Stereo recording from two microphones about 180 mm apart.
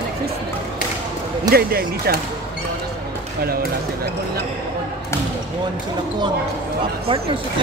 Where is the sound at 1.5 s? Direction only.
55° right (ahead or behind).